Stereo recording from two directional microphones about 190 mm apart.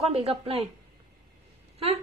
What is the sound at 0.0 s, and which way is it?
Speech, 30° right (ahead or behind).